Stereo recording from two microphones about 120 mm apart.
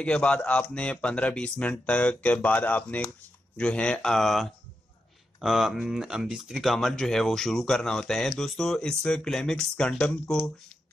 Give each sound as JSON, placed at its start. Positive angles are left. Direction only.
{"t": 0.0, "sound": "speech", "side_deg": 10}